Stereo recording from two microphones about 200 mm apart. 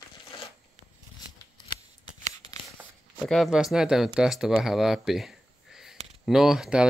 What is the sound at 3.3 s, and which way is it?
Speech, centre (ahead or behind).